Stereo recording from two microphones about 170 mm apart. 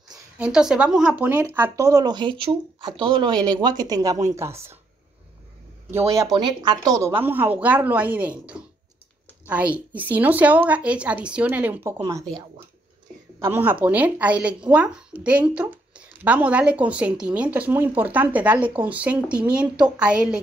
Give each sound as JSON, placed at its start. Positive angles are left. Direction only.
{"t": 0.4, "sound": "speech", "side_deg": -5}
{"t": 5.9, "sound": "speech", "side_deg": -15}
{"t": 12.0, "sound": "speech", "side_deg": -20}
{"t": 13.4, "sound": "speech", "side_deg": -10}